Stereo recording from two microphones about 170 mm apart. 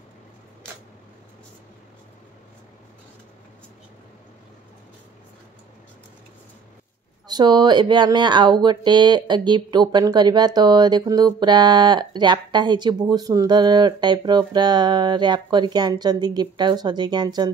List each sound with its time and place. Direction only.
7.2 s speech: 25° right (ahead or behind)